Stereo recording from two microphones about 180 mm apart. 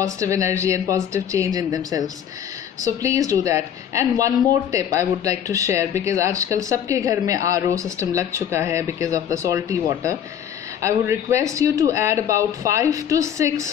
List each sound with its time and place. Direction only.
0.0 s a woman's voice: 15° right (ahead or behind)